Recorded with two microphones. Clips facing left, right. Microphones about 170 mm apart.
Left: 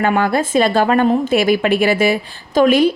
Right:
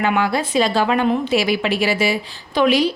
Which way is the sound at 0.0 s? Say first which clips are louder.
Left 3 dB; 50° left (ahead or behind).